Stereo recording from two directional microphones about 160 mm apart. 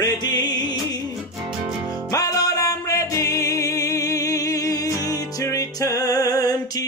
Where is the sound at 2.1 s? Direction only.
20° left (ahead or behind).